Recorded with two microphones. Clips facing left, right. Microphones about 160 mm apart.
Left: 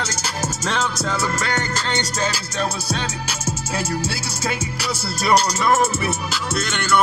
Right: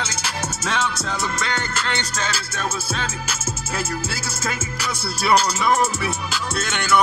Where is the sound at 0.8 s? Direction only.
40° left (ahead or behind).